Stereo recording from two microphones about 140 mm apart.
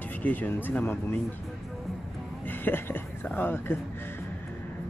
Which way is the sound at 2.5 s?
15° left (ahead or behind).